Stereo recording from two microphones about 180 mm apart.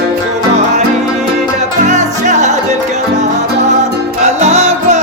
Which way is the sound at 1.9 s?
40° right (ahead or behind).